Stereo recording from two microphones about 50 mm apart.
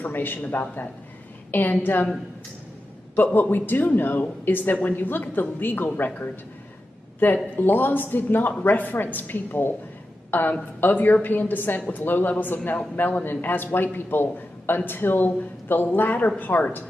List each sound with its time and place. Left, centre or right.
0.0 s speech: left
3.3 s speech: left